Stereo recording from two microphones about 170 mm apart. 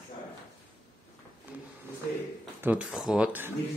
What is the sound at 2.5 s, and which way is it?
Speech, 10° right (ahead or behind).